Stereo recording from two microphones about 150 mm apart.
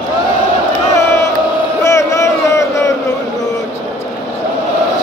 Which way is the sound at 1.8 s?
20° left (ahead or behind).